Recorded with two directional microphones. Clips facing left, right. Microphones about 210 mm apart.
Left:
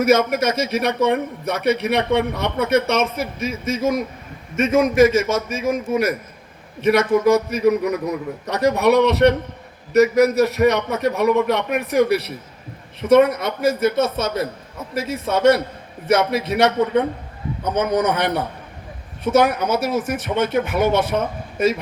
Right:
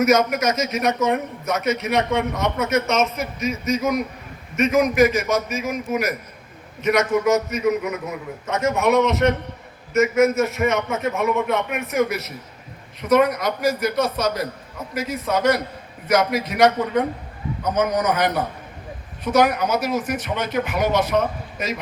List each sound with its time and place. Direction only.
0.0 s a man's voice: 30° left (ahead or behind)